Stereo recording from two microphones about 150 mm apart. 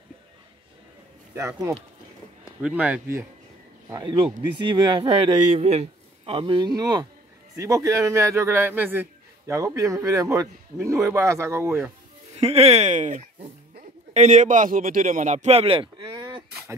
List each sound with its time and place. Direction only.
2.6 s speech: 10° right (ahead or behind)
3.9 s speech: 30° right (ahead or behind)
5.6 s speech: 45° right (ahead or behind); by 11.9 s 15° right (ahead or behind)
12.4 s speech: 45° right (ahead or behind)